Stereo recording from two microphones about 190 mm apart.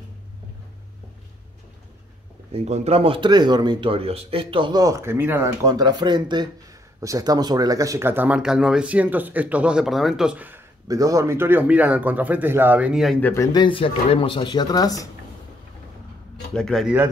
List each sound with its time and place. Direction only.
2.6 s speech: 35° right (ahead or behind); by 13.3 s centre (ahead or behind)
13.3 s speech: 20° left (ahead or behind)
16.5 s a man's voice: centre (ahead or behind)